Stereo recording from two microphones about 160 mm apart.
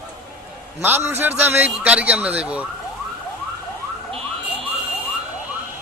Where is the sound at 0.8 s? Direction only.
15° right (ahead or behind).